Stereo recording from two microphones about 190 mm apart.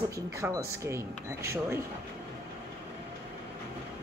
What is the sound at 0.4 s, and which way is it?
Speech, 15° right (ahead or behind).